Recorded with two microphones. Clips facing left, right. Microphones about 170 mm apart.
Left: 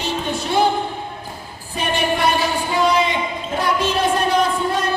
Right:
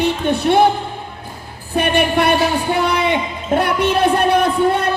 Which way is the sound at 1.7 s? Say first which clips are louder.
Right 5 dB; 60° right (ahead or behind).